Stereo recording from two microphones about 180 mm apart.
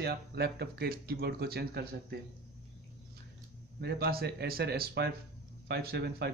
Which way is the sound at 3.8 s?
60° right (ahead or behind).